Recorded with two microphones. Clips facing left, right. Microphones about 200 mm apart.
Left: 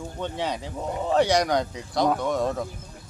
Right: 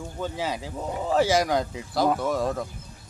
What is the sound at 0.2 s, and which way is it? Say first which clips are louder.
Speech: even; centre (ahead or behind).